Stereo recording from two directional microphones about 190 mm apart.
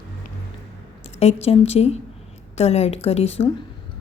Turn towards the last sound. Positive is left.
turn(degrees=30)  # may be behind; listen again after turning